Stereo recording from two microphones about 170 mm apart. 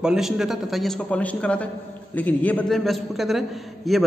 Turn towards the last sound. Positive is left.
turn(degrees=0)  # may be behind; listen again after turning